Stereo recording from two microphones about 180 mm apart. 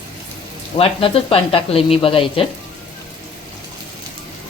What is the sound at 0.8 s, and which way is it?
Speech, 30° left (ahead or behind).